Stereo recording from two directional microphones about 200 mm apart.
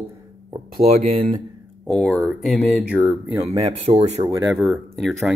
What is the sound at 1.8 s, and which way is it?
Speech, centre (ahead or behind).